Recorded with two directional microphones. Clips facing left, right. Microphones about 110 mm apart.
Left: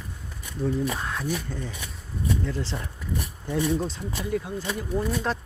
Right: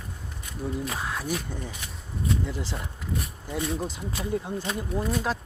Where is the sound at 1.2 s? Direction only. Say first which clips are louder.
Left 1 dB; 15° right (ahead or behind).